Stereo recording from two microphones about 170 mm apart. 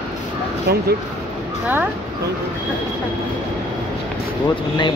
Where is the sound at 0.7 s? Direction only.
65° right (ahead or behind).